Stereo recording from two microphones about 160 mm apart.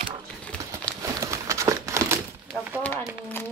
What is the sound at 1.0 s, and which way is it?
Crumpling, 20° right (ahead or behind).